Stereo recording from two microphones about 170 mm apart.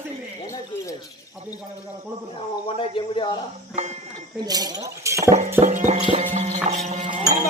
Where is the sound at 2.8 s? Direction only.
30° left (ahead or behind).